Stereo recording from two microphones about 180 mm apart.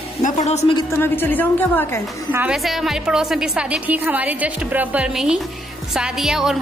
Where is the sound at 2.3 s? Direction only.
5° right (ahead or behind).